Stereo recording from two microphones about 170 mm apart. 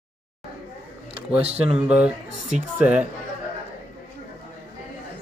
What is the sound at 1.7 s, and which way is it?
Speech, 5° right (ahead or behind).